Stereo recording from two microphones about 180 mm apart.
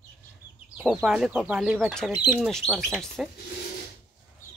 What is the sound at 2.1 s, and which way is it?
Speech, 25° left (ahead or behind).